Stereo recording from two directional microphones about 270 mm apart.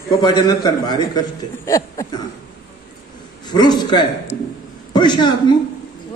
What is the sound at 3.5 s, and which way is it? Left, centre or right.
A man's voice, centre.